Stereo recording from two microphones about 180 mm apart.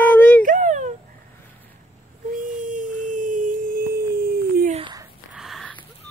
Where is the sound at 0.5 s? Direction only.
45° right (ahead or behind).